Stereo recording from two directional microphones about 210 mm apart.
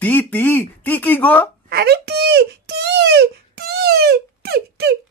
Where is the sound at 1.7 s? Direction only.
50° right (ahead or behind).